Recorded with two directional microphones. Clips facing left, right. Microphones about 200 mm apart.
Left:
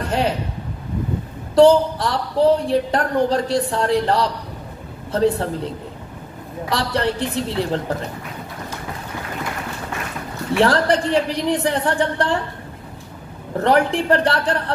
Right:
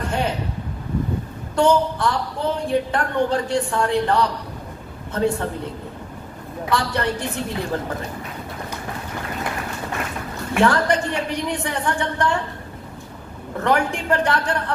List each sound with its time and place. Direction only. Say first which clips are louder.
0.0 s a sound: left 3 dB; 35° left (ahead or behind)
1.5 s a woman's voice: left 6 dB; 35° left (ahead or behind)
6.7 s a woman's voice: left 1 dB; 35° left (ahead or behind)
10.5 s a woman's voice: left 2 dB; 35° left (ahead or behind)
13.7 s a woman's voice: left 4 dB; 35° left (ahead or behind)